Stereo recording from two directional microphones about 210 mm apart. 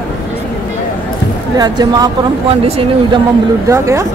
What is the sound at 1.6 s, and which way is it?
Speech, 20° right (ahead or behind).